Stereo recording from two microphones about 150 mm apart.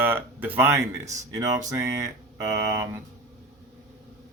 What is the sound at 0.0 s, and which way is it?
Speech, 15° right (ahead or behind).